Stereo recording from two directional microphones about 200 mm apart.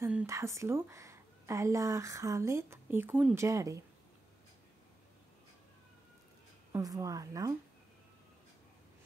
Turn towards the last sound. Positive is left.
turn(degrees=-15)  # may be behind; listen again after turning